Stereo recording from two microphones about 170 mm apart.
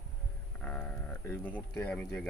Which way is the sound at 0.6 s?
10° left (ahead or behind).